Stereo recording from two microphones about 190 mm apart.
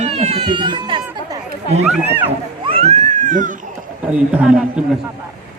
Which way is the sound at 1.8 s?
5° right (ahead or behind).